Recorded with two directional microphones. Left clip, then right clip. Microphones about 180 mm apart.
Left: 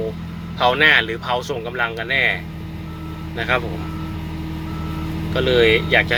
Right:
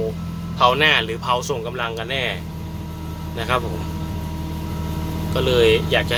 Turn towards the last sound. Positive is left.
turn(degrees=-15)  # may be behind; listen again after turning